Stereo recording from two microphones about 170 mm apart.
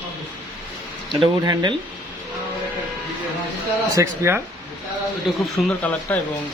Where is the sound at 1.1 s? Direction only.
25° right (ahead or behind).